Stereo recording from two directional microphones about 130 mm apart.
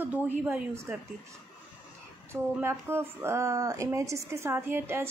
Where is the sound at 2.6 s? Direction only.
20° right (ahead or behind).